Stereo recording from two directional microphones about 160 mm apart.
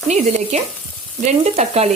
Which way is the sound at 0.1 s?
45° right (ahead or behind).